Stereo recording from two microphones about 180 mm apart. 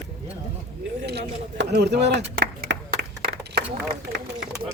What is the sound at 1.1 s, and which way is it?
Speech, 65° right (ahead or behind).